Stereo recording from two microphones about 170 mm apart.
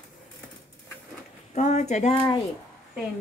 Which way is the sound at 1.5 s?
45° left (ahead or behind).